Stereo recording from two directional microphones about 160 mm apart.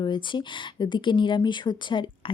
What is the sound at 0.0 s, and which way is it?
Speech, 30° left (ahead or behind).